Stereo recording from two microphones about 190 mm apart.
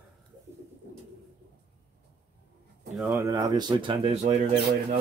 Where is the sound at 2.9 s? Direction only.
15° right (ahead or behind); by 4.3 s 30° right (ahead or behind).